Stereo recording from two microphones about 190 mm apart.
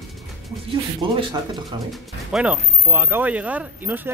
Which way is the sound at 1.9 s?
5° right (ahead or behind).